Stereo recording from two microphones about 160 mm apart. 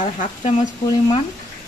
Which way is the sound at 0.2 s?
45° left (ahead or behind).